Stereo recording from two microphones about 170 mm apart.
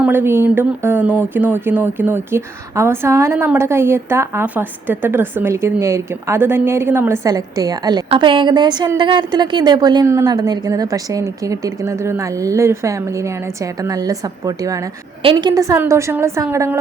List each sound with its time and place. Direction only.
0.0 s a woman's voice: 10° right (ahead or behind)